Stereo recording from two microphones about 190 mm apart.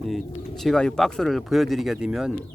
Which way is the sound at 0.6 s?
5° left (ahead or behind).